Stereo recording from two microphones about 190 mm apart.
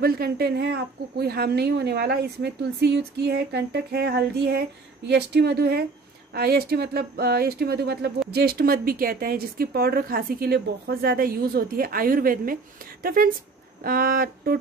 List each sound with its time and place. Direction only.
0.0 s a woman's voice: 55° right (ahead or behind)